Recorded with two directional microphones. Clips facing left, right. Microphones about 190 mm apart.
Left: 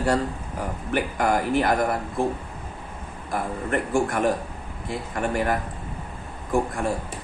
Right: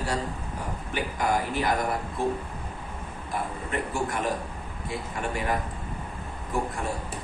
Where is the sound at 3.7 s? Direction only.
55° left (ahead or behind).